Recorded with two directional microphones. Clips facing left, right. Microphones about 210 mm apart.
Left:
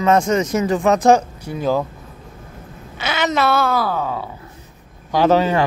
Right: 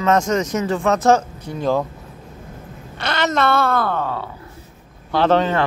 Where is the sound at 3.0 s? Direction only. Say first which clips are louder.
Even; 5° left (ahead or behind).